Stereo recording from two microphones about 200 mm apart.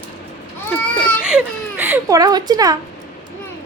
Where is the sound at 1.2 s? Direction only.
5° right (ahead or behind).